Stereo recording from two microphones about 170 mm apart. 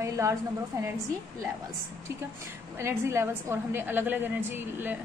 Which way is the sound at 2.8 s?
15° right (ahead or behind).